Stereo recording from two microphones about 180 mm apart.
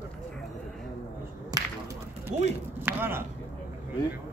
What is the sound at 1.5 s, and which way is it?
Whip, 20° right (ahead or behind).